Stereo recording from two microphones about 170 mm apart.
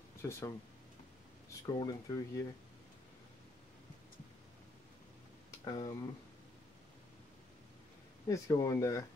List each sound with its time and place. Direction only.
0.2 s speech: 15° left (ahead or behind)
1.7 s speech: 20° left (ahead or behind)
5.7 s speech: 20° left (ahead or behind)
8.3 s speech: 20° left (ahead or behind)